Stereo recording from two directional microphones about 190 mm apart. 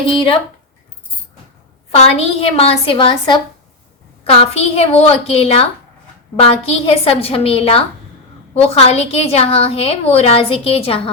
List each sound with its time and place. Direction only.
0.0 s speech: 25° left (ahead or behind)
2.0 s a woman's voice: 35° left (ahead or behind)